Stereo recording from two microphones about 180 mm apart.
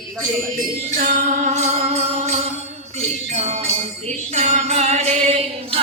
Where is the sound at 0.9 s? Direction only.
50° right (ahead or behind).